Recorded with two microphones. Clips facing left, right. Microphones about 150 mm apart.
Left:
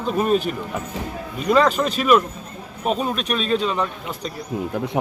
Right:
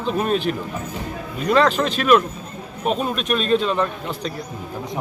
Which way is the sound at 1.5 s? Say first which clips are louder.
Even; 5° left (ahead or behind).